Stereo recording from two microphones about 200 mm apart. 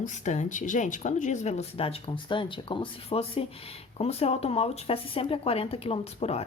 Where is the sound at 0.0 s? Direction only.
35° left (ahead or behind).